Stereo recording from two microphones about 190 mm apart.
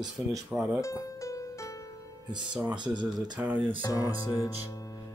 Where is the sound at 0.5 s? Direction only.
5° right (ahead or behind).